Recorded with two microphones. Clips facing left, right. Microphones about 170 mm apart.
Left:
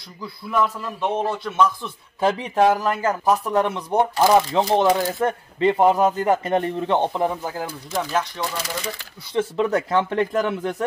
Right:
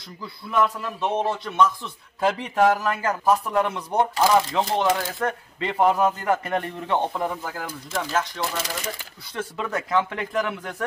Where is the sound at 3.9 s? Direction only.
20° left (ahead or behind).